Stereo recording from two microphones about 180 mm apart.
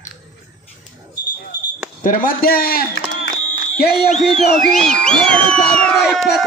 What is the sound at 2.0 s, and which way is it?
A man's voice, 50° left (ahead or behind).